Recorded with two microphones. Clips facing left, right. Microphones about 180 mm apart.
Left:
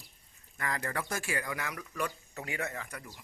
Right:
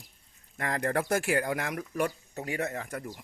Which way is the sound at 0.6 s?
60° right (ahead or behind).